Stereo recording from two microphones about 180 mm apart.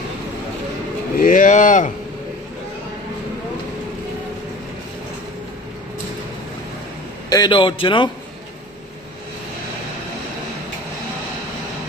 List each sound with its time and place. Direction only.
1.1 s speech: 50° left (ahead or behind)
7.2 s a man's voice: 25° left (ahead or behind)